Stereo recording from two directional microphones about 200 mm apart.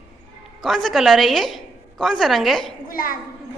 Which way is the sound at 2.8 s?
45° left (ahead or behind).